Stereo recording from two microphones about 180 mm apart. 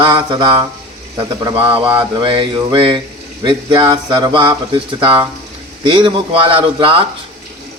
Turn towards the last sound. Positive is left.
turn(degrees=-30)  # may be behind; listen again after turning